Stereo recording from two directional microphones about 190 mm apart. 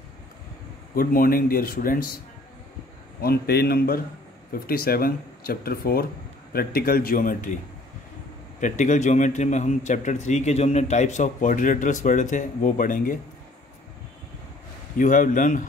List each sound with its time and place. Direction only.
0.9 s speech: 50° left (ahead or behind)
3.2 s speech: 55° left (ahead or behind)
8.5 s a man's voice: 40° left (ahead or behind)
15.0 s speech: 45° left (ahead or behind)